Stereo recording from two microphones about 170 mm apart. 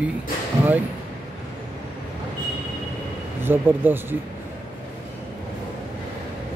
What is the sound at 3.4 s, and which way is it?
Speech, 10° right (ahead or behind).